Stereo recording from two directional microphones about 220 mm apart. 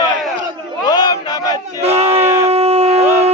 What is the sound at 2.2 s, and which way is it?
Shofar, 10° right (ahead or behind).